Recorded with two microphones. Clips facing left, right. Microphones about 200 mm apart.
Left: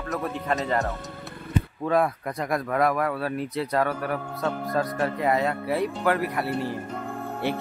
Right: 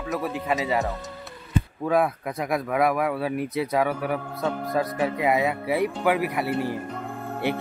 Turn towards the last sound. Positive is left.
turn(degrees=-15)  # may be behind; listen again after turning